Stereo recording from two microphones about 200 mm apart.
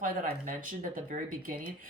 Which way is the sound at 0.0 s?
45° right (ahead or behind).